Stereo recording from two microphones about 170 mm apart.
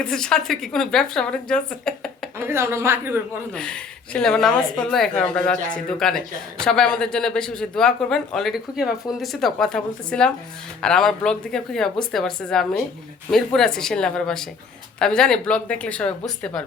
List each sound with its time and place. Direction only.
0.0 s a woman's voice: 5° left (ahead or behind)
2.4 s a man's voice: 15° right (ahead or behind)
3.5 s a woman's voice: 5° left (ahead or behind)